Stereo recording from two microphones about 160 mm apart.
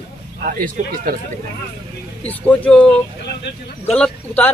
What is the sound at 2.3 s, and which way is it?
Speech, 10° left (ahead or behind).